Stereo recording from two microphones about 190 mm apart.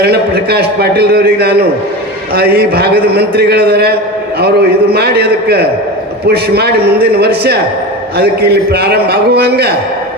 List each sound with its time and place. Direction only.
0.0 s a man's voice: 55° right (ahead or behind)